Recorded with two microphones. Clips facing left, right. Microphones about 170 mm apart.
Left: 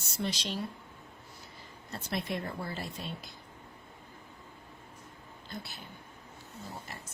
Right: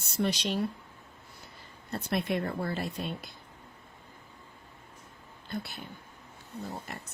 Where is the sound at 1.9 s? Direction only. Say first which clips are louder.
Right 5 dB; 60° right (ahead or behind).